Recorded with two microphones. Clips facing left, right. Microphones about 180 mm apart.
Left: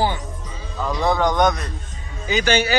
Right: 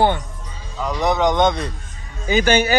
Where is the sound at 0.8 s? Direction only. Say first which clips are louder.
Right 1 dB; 20° right (ahead or behind).